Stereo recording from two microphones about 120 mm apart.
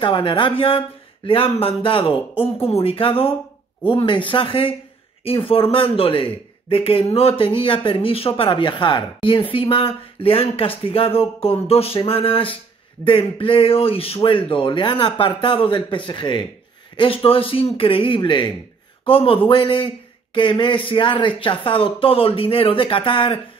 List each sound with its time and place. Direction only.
0.0 s speech: 45° left (ahead or behind)